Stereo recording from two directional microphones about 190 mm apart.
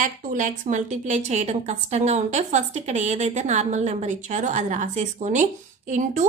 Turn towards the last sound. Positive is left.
turn(degrees=-40)  # may be behind; listen again after turning